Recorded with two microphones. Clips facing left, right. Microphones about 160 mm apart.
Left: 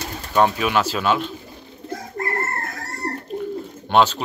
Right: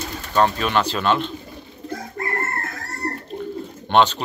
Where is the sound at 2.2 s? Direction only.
40° left (ahead or behind).